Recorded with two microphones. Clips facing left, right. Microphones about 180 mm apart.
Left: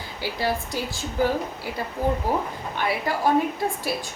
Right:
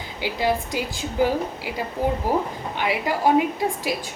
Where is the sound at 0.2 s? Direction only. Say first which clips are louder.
Right 3 dB; 15° right (ahead or behind).